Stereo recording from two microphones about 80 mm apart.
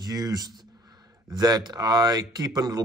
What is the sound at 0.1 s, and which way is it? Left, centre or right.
Speech, right.